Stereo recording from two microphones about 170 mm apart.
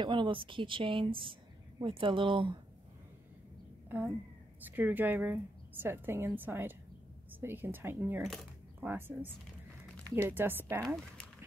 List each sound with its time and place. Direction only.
0.0 s a woman's voice: 30° right (ahead or behind)
4.6 s a woman's voice: 10° right (ahead or behind)